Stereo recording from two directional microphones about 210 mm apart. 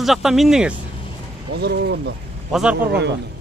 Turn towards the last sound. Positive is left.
turn(degrees=-55)  # may be behind; listen again after turning